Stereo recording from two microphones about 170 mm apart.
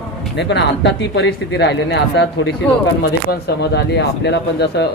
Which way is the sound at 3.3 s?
75° left (ahead or behind).